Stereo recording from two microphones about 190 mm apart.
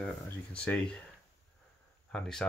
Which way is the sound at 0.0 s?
5° left (ahead or behind).